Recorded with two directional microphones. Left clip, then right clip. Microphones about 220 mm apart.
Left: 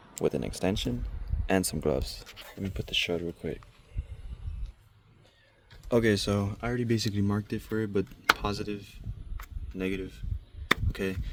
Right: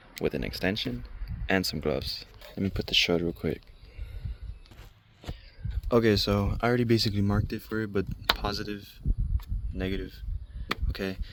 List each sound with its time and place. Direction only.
0.2 s speech: 5° left (ahead or behind)
2.6 s speech: 30° right (ahead or behind)
5.9 s speech: 5° right (ahead or behind)
6.6 s speech: 20° right (ahead or behind); by 9.0 s centre (ahead or behind)
9.4 s a sound: centre (ahead or behind)
10.9 s speech: centre (ahead or behind)